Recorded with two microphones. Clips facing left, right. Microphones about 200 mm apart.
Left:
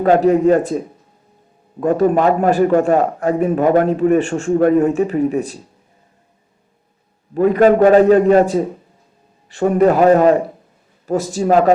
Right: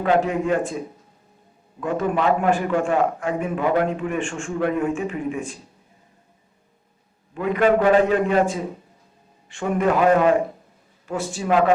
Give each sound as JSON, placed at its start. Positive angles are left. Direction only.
{"t": 0.0, "sound": "a man's voice", "side_deg": 40}
{"t": 1.8, "sound": "a man's voice", "side_deg": 40}
{"t": 7.3, "sound": "a man's voice", "side_deg": 40}